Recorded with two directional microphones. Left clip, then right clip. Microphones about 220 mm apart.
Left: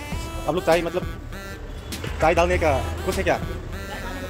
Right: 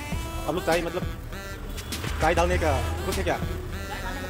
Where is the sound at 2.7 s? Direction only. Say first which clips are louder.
Left 4 dB; centre (ahead or behind).